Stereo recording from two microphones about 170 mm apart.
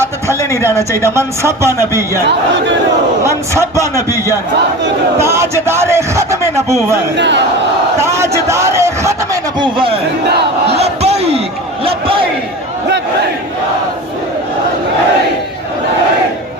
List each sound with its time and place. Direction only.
0.6 s a man's voice: 15° right (ahead or behind)
3.2 s a man's voice: 15° right (ahead or behind)
5.2 s a man's voice: 15° right (ahead or behind)
7.2 s battle cry: 90° right
8.0 s a man's voice: 15° right (ahead or behind)
10.8 s speech: 40° right (ahead or behind)
11.9 s a sound: 30° right (ahead or behind)